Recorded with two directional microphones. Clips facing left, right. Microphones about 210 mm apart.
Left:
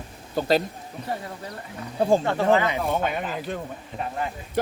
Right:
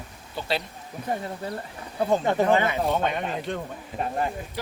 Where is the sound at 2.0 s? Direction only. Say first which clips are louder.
Left 3 dB; 30° left (ahead or behind).